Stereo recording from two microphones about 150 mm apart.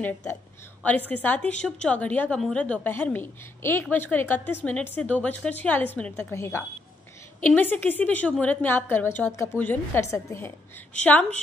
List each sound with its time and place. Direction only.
0.8 s a woman's voice: 10° left (ahead or behind)